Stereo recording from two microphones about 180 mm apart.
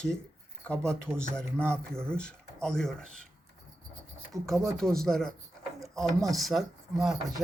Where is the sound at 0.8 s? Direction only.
15° right (ahead or behind).